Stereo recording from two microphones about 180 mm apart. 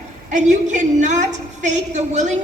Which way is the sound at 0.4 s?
40° right (ahead or behind).